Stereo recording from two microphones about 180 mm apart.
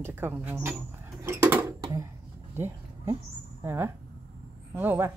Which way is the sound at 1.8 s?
20° right (ahead or behind).